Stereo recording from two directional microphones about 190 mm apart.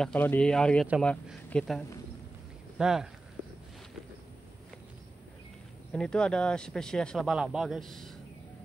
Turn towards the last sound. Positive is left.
turn(degrees=0)  # may be behind; listen again after turning